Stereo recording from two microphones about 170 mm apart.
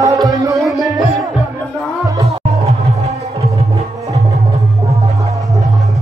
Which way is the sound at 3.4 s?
35° right (ahead or behind).